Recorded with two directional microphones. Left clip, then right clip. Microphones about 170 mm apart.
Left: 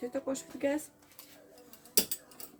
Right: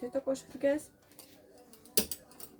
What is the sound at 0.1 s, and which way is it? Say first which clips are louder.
Speech: right 2 dB; 20° left (ahead or behind).